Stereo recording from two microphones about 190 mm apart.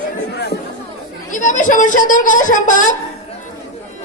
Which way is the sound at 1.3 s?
40° left (ahead or behind).